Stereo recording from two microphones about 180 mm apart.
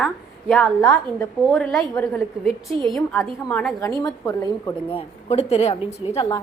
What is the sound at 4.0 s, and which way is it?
Speech, 20° left (ahead or behind).